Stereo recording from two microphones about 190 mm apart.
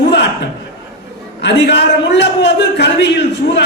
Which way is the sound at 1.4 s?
65° left (ahead or behind).